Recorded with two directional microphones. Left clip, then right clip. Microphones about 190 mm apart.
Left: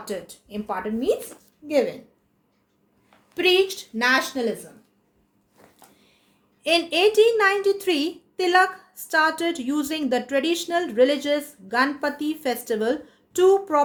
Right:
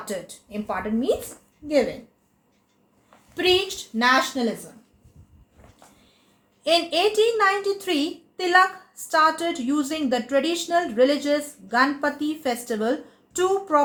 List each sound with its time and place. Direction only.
0.0 s a woman's voice: 40° left (ahead or behind)
3.3 s a woman's voice: 50° left (ahead or behind)
6.6 s a woman's voice: 45° left (ahead or behind)